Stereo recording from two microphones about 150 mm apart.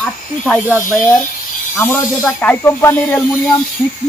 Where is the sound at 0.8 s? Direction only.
60° left (ahead or behind).